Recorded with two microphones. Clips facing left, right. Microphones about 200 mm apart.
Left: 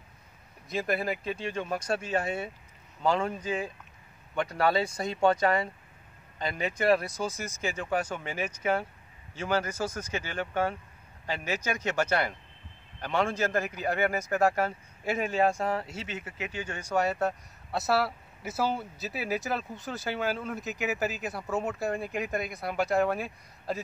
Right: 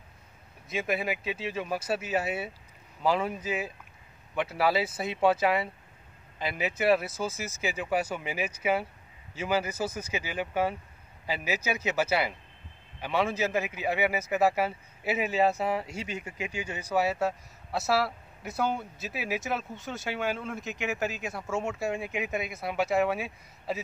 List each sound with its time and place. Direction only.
0.7 s speech: centre (ahead or behind)